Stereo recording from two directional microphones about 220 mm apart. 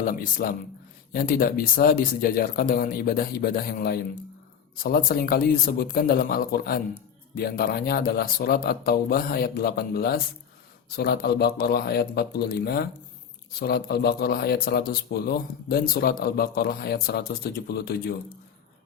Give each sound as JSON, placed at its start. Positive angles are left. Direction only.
{"t": 0.0, "sound": "a man's voice", "side_deg": 40}